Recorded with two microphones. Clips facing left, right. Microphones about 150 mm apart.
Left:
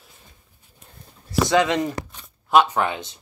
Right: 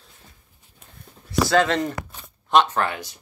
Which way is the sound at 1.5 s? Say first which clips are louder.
Even; 15° left (ahead or behind).